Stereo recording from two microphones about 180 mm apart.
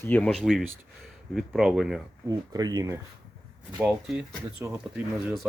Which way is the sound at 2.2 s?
20° right (ahead or behind).